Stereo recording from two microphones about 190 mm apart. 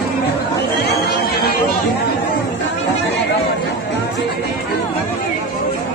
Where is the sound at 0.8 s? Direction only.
55° left (ahead or behind).